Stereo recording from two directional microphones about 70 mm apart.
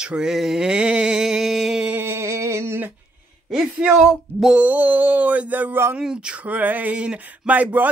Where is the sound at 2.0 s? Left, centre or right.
Right.